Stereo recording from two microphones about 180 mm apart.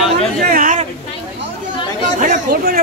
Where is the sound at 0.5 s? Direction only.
50° right (ahead or behind).